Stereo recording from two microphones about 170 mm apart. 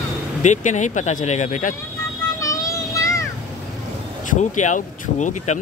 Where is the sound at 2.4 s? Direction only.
20° left (ahead or behind).